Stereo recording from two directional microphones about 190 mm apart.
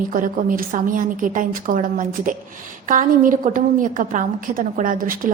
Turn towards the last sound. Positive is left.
turn(degrees=-45)  # may be behind; listen again after turning